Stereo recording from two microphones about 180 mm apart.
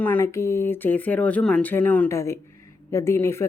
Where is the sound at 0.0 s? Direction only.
10° left (ahead or behind).